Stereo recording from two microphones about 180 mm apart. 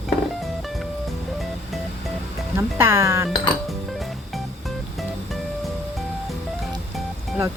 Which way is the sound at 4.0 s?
Centre (ahead or behind).